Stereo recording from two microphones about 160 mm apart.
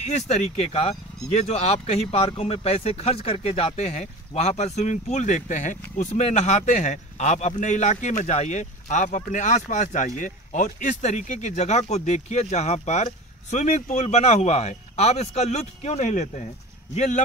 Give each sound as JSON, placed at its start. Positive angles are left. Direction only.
{"t": 0.0, "sound": "speech", "side_deg": 40}